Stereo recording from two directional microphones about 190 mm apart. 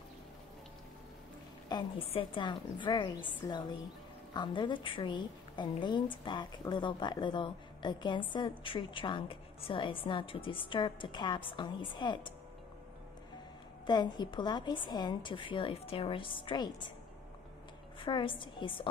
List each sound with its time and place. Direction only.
1.7 s a woman's voice: 25° left (ahead or behind)
13.8 s a woman's voice: 25° left (ahead or behind)
17.9 s a woman's voice: 25° left (ahead or behind)